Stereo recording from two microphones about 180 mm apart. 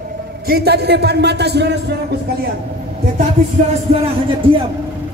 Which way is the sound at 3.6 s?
45° right (ahead or behind).